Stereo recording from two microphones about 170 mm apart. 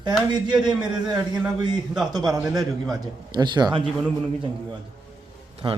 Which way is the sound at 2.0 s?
25° right (ahead or behind).